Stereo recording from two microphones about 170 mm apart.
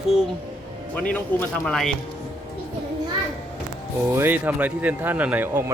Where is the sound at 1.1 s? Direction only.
5° left (ahead or behind).